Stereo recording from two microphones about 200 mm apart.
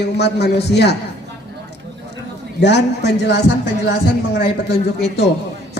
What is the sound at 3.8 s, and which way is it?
A man's voice, 55° left (ahead or behind).